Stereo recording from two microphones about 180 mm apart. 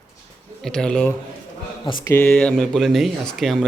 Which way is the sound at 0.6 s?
5° left (ahead or behind).